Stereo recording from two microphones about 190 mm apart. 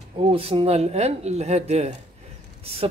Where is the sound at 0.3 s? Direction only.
30° right (ahead or behind).